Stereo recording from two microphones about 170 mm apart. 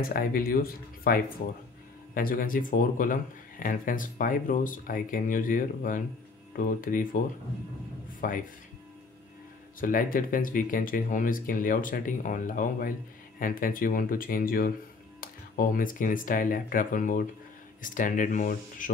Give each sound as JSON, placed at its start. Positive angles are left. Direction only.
{"t": 0.0, "sound": "speech", "side_deg": 60}
{"t": 8.2, "sound": "speech", "side_deg": 55}
{"t": 9.8, "sound": "speech", "side_deg": 55}